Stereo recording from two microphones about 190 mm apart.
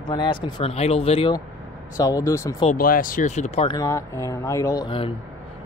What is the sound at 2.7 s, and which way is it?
Speech, 50° left (ahead or behind).